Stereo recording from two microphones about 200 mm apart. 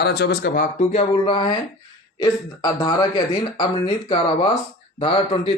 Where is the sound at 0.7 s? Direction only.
30° left (ahead or behind).